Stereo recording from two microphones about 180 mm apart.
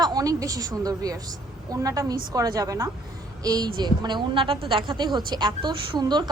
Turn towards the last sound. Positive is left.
turn(degrees=-25)  # may be behind; listen again after turning